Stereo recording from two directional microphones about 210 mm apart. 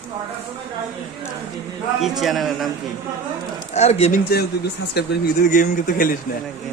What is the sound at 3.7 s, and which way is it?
Speech, 30° left (ahead or behind).